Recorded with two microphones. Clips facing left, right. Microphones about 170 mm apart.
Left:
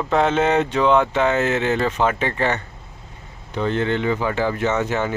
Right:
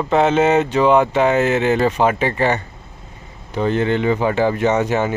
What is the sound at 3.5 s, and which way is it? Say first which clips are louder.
Speech: right 3 dB; 10° right (ahead or behind).